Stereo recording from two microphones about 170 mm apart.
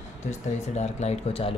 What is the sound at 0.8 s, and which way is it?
Speech, 40° left (ahead or behind).